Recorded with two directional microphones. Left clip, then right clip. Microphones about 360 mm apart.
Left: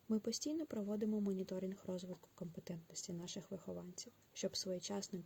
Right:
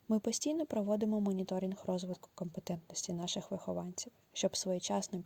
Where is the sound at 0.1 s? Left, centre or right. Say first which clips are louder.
Right 6 dB; right.